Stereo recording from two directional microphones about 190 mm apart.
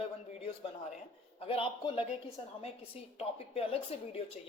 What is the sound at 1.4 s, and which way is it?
Speech, 30° left (ahead or behind).